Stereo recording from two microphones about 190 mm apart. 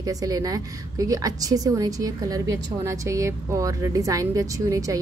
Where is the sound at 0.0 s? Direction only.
20° right (ahead or behind).